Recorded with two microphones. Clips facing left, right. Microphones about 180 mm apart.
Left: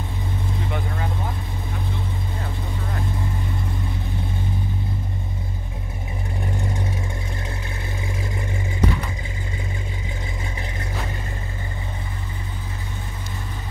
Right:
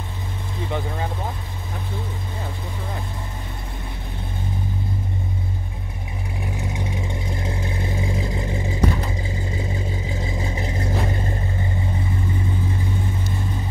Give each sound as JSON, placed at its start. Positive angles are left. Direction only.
{"t": 6.4, "sound": "vehicle", "side_deg": -5}
{"t": 7.4, "sound": "vehicle", "side_deg": -25}
{"t": 10.4, "sound": "vehicle", "side_deg": -25}